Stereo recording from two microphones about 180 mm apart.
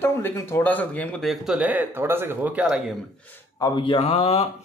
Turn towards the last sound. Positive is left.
turn(degrees=35)  # may be behind; listen again after turning